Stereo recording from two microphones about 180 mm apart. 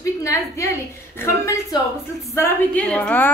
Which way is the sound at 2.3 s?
10° left (ahead or behind).